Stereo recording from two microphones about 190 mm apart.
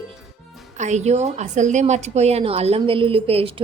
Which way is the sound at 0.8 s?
35° right (ahead or behind).